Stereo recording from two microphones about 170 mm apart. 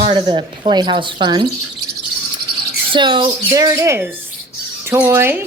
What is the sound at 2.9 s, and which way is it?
Speech, 30° right (ahead or behind).